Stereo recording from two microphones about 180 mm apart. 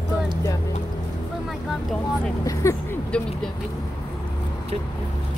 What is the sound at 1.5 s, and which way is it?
Vehicle, centre (ahead or behind).